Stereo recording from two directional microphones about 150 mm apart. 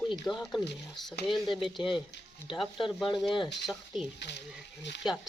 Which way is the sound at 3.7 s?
5° right (ahead or behind).